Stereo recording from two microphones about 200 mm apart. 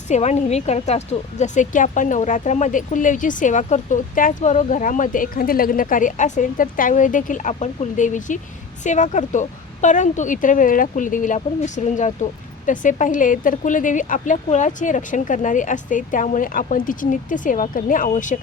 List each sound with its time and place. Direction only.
0.1 s a woman's voice: 35° left (ahead or behind)